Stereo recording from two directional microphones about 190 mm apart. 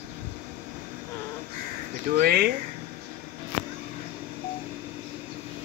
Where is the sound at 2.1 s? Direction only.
55° right (ahead or behind).